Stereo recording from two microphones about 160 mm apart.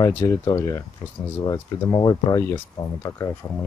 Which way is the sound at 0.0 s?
20° left (ahead or behind).